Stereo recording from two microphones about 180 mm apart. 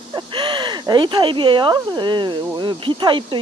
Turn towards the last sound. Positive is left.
turn(degrees=-25)  # may be behind; listen again after turning